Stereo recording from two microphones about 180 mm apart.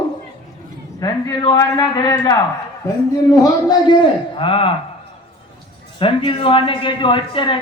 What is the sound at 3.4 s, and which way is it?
A man's voice, 20° left (ahead or behind).